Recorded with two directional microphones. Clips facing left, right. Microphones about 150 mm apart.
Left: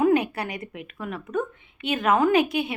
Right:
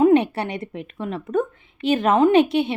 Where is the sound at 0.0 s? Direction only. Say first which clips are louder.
Right 5 dB; 30° right (ahead or behind).